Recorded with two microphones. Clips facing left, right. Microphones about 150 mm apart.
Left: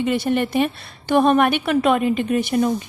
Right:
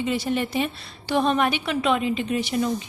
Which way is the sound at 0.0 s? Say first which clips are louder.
Left 5 dB; 60° left (ahead or behind).